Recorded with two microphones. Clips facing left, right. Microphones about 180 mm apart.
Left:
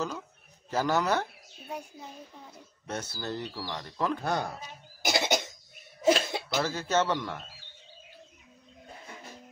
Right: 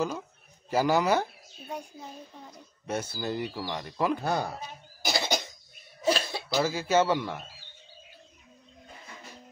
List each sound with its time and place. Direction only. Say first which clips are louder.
0.7 s speech: right 3 dB; 10° right (ahead or behind)
2.9 s speech: right 4 dB; 10° right (ahead or behind)
5.0 s cough: left 2 dB; 20° left (ahead or behind)
6.5 s speech: right 3 dB; 10° right (ahead or behind)